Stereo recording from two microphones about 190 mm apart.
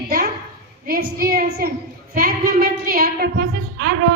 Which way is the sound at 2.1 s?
50° right (ahead or behind).